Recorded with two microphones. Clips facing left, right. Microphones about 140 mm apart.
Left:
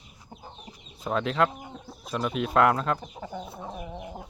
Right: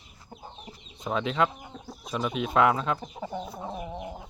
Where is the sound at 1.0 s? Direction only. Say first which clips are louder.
Left 1 dB; centre (ahead or behind).